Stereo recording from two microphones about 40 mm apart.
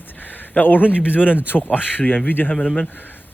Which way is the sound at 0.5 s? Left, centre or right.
Left.